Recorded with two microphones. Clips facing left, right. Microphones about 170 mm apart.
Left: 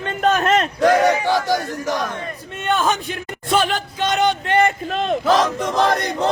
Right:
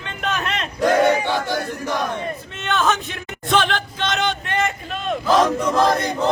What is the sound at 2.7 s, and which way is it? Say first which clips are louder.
A man's voice: left 1 dB; 10° left (ahead or behind).